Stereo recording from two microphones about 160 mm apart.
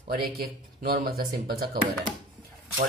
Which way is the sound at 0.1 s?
70° right (ahead or behind).